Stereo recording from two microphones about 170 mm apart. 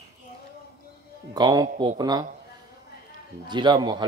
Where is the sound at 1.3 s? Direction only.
25° right (ahead or behind).